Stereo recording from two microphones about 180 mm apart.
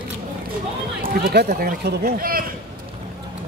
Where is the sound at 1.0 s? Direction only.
55° right (ahead or behind).